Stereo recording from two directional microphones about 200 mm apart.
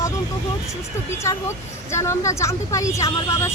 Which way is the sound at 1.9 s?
15° left (ahead or behind).